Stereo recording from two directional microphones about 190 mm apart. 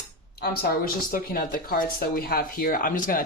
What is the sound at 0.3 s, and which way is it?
A woman's voice, 55° left (ahead or behind).